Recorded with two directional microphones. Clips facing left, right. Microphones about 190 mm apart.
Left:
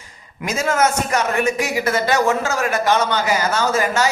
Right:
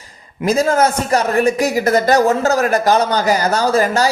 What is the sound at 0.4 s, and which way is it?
A man's voice, 35° right (ahead or behind).